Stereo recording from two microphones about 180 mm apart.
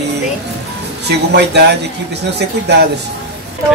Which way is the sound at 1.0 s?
70° right (ahead or behind).